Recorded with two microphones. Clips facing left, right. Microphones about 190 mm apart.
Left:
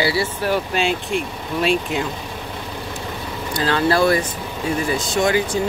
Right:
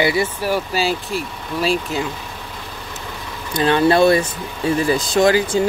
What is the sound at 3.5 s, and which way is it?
Speech, 20° right (ahead or behind).